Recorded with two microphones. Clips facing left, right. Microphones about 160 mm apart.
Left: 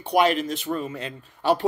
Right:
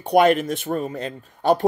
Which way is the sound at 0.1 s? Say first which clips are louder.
Right 4 dB; 50° right (ahead or behind).